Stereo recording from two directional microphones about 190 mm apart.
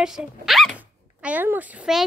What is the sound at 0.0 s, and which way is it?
Speech, 5° right (ahead or behind).